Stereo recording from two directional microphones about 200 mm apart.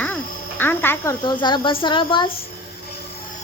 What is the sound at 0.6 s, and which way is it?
Speech, 10° left (ahead or behind).